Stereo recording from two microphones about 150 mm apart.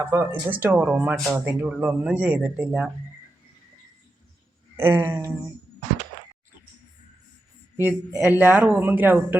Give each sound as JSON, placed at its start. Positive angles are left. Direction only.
{"t": 0.0, "sound": "speech", "side_deg": -15}
{"t": 4.8, "sound": "speech", "side_deg": -15}
{"t": 7.8, "sound": "speech", "side_deg": -10}